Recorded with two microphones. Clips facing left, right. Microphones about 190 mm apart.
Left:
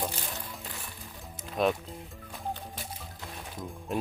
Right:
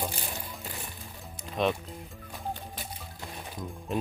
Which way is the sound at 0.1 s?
15° right (ahead or behind).